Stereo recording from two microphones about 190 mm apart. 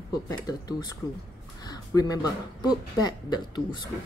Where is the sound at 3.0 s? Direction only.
20° left (ahead or behind).